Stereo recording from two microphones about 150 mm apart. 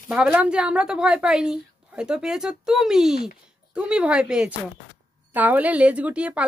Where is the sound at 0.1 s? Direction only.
10° right (ahead or behind).